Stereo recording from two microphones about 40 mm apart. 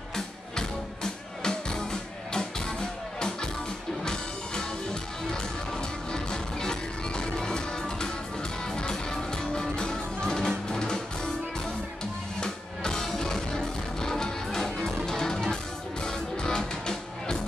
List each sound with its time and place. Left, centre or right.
0.1 s music: centre
4.0 s music: centre
6.1 s music: centre
12.4 s music: centre